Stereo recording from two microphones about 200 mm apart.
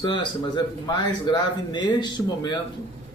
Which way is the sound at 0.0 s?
20° left (ahead or behind).